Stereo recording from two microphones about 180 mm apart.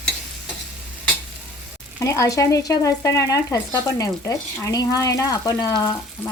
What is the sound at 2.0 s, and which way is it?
Speech, 15° left (ahead or behind).